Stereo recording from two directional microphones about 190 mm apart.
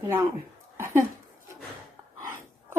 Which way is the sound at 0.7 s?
15° right (ahead or behind).